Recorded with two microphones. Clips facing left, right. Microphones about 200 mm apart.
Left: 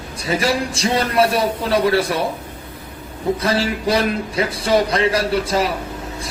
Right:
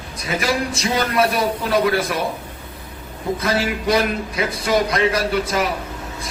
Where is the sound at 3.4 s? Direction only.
30° left (ahead or behind).